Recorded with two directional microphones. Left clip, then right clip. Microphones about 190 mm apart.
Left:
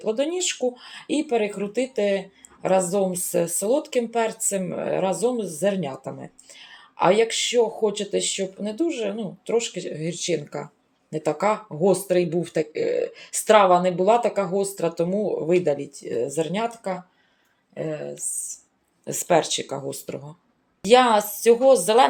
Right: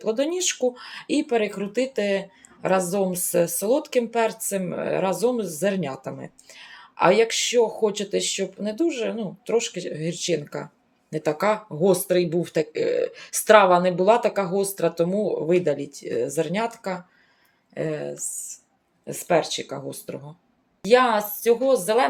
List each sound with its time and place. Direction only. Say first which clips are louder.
0.0 s speech: even; 5° right (ahead or behind)
17.7 s speech: right 2 dB; 20° right (ahead or behind)
19.0 s speech: left 1 dB; 20° left (ahead or behind)